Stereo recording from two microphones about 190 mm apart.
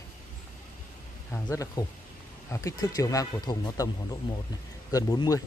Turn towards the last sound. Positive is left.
turn(degrees=20)  # may be behind; listen again after turning